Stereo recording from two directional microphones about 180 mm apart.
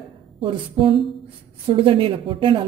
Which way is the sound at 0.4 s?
30° right (ahead or behind).